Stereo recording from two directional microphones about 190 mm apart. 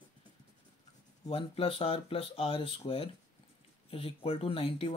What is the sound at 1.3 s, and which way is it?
Speech, 30° left (ahead or behind).